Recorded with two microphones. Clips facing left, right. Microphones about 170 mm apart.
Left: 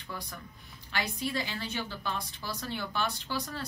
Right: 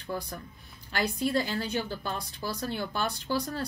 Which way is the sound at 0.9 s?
45° right (ahead or behind).